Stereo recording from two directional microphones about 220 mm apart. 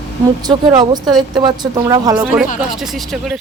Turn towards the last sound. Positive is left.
turn(degrees=0)  # may be behind; listen again after turning